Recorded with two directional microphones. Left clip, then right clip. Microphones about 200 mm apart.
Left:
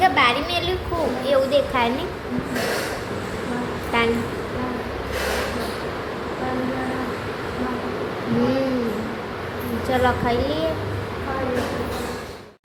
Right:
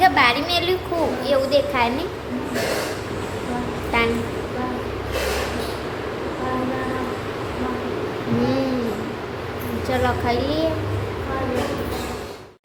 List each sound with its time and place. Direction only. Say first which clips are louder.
0.0 s a sound: right 1 dB; 5° right (ahead or behind)
3.9 s a woman's voice: even; centre (ahead or behind)
9.9 s a woman's voice: left 1 dB; centre (ahead or behind)